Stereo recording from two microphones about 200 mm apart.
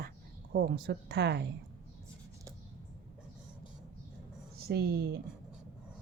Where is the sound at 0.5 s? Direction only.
50° right (ahead or behind).